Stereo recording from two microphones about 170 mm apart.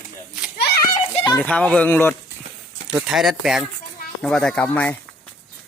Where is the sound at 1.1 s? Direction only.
25° left (ahead or behind).